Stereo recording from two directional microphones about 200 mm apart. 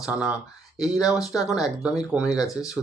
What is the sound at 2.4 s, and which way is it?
Speech, 15° left (ahead or behind).